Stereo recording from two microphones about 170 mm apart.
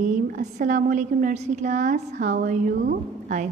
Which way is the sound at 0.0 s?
50° right (ahead or behind).